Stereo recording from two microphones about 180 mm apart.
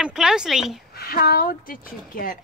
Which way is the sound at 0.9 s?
55° left (ahead or behind).